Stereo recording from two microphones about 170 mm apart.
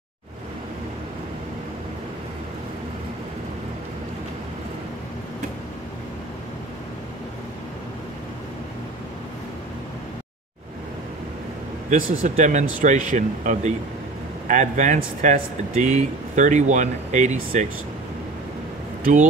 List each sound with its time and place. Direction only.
11.9 s speech: 50° right (ahead or behind)